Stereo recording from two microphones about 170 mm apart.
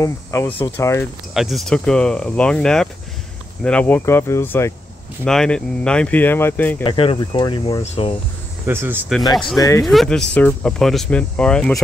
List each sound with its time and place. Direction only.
0.0 s speech: 15° left (ahead or behind)
1.3 s speech: centre (ahead or behind); by 4.7 s 15° left (ahead or behind)
5.2 s speech: 5° left (ahead or behind)
6.8 s speech: 30° left (ahead or behind)
7.8 s speech: 40° left (ahead or behind)
8.6 s speech: 10° right (ahead or behind)
9.6 s speech: 20° left (ahead or behind)
9.8 s speech: centre (ahead or behind)